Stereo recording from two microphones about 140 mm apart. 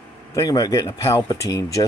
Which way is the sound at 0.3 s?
25° left (ahead or behind).